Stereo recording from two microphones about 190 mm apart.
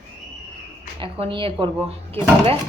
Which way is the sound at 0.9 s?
25° right (ahead or behind).